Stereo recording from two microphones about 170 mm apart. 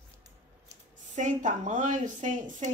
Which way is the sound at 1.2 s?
45° right (ahead or behind).